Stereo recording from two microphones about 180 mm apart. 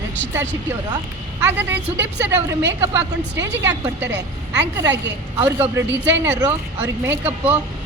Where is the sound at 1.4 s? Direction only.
10° right (ahead or behind).